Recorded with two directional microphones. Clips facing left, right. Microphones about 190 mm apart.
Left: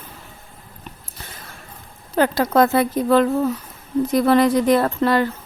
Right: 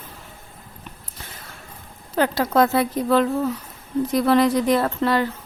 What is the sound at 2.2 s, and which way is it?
Speech, 50° left (ahead or behind).